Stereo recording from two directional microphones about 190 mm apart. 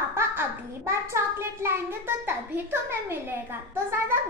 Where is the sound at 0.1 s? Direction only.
15° right (ahead or behind).